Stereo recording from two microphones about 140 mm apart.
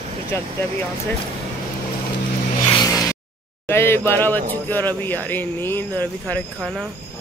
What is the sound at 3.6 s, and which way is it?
Speech, 15° left (ahead or behind).